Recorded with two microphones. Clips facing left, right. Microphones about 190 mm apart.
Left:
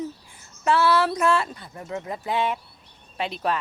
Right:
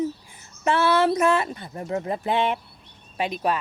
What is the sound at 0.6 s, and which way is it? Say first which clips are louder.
Speech: even; 20° right (ahead or behind).